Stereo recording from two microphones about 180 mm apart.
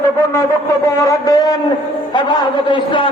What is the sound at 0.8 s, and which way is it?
A man's voice, 20° left (ahead or behind).